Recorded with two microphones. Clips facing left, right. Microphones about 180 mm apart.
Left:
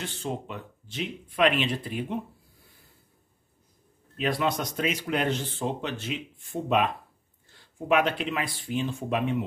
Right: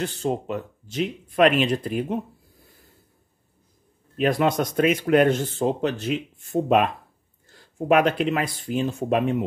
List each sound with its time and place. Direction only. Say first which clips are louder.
0.0 s speech: right 7 dB; 40° right (ahead or behind)
4.2 s speech: right 6 dB; 50° right (ahead or behind)